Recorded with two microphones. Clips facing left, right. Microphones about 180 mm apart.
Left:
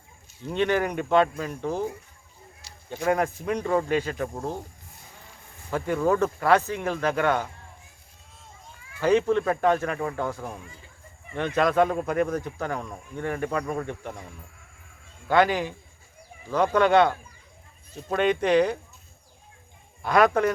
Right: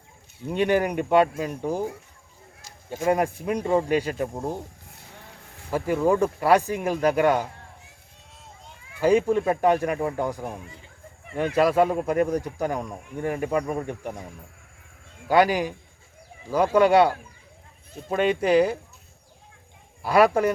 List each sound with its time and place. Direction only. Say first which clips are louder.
0.4 s speech: right 2 dB; 10° right (ahead or behind)
2.6 s a sound: right 2 dB; 45° right (ahead or behind)
3.0 s speech: right 2 dB; 10° right (ahead or behind)
5.7 s speech: right 2 dB; 10° right (ahead or behind)
9.0 s speech: right 1 dB; 10° right (ahead or behind)
15.3 s speech: right 2 dB; 10° right (ahead or behind)
20.0 s speech: right 2 dB; 5° right (ahead or behind)